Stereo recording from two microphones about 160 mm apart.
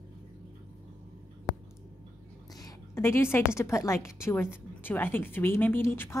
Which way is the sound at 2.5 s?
20° left (ahead or behind).